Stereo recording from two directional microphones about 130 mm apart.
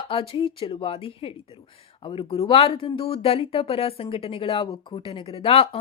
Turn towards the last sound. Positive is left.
turn(degrees=45)  # may be behind; listen again after turning